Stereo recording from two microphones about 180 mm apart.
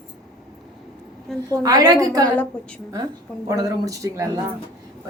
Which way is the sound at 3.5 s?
20° right (ahead or behind).